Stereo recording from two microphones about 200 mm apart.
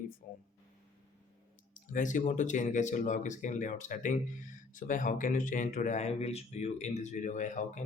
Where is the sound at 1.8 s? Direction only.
40° left (ahead or behind).